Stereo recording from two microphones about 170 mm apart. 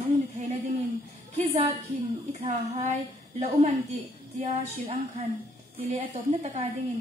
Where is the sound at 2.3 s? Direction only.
35° right (ahead or behind).